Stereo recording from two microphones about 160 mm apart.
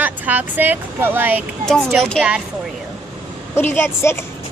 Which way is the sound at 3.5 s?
15° left (ahead or behind).